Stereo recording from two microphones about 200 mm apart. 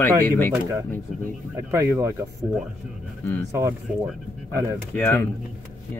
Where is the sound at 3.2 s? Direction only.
10° left (ahead or behind).